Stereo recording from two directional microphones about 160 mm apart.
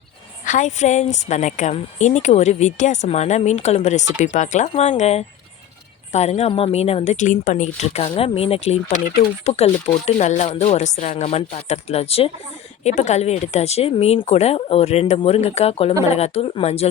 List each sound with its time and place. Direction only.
0.4 s speech: 50° left (ahead or behind)